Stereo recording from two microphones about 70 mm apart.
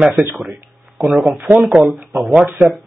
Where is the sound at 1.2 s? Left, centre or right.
Right.